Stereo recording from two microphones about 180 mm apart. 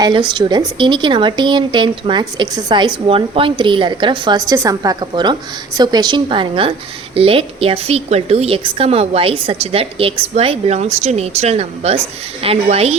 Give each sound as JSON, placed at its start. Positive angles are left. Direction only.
{"t": 0.0, "sound": "a woman's voice", "side_deg": -25}